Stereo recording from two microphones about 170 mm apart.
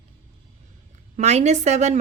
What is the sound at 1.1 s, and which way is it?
Speech, 40° right (ahead or behind).